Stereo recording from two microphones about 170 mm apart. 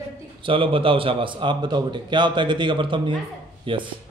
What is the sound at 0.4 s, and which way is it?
A man's voice, 30° right (ahead or behind).